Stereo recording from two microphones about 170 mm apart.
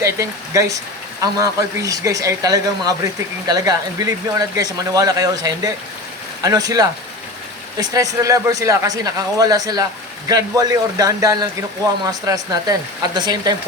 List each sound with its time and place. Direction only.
0.0 s speech: 20° right (ahead or behind)